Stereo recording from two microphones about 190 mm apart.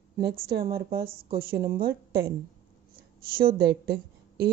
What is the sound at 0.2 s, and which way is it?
A woman's voice, 55° right (ahead or behind).